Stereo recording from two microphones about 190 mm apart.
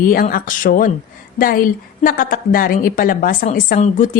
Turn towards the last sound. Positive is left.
turn(degrees=45)  # may be behind; listen again after turning